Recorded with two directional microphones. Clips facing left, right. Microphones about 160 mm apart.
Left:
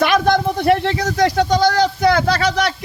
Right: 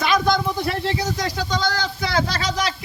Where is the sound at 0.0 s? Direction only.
65° left (ahead or behind).